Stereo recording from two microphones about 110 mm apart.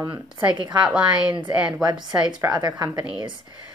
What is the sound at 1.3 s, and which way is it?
Speech, 45° right (ahead or behind).